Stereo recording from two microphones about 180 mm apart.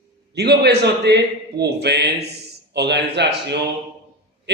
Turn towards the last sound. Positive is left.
turn(degrees=-70)  # may be behind; listen again after turning